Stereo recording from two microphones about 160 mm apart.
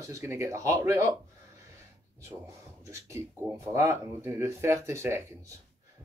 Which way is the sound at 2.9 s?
20° right (ahead or behind).